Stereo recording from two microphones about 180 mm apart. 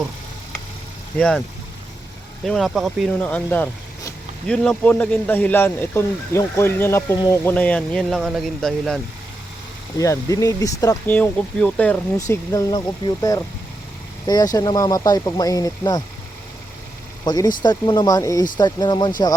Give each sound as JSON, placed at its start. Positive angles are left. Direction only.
{"t": 2.4, "sound": "speech", "side_deg": 0}
{"t": 10.0, "sound": "speech", "side_deg": 20}
{"t": 17.2, "sound": "speech", "side_deg": 20}